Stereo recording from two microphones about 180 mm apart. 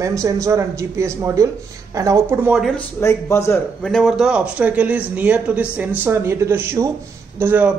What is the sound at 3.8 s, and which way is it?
Speech, centre (ahead or behind).